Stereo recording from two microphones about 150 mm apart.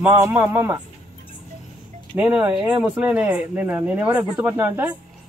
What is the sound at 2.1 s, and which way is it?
Speech, 10° right (ahead or behind).